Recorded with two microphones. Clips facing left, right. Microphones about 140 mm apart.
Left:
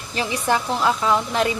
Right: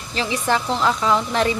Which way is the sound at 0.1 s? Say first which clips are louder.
Even; 15° left (ahead or behind).